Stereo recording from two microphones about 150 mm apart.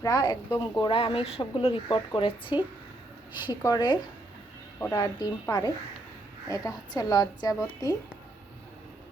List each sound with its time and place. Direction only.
0.0 s a woman's voice: 25° left (ahead or behind)
0.8 s a woman's voice: 35° left (ahead or behind)
3.4 s a woman's voice: 25° left (ahead or behind)